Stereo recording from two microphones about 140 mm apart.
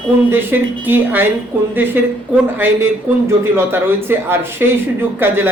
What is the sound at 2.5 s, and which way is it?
Speech, 15° right (ahead or behind).